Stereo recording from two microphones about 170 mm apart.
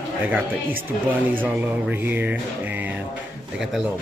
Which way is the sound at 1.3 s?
10° right (ahead or behind).